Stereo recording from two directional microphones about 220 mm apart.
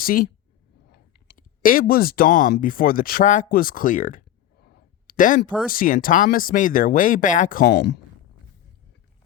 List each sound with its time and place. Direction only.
0.0 s speech: 40° left (ahead or behind)